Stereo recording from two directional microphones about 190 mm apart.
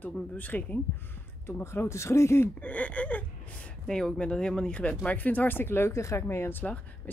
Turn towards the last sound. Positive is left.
turn(degrees=10)  # may be behind; listen again after turning